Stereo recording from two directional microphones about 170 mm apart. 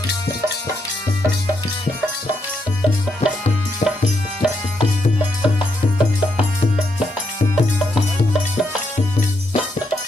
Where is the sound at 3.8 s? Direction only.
45° left (ahead or behind).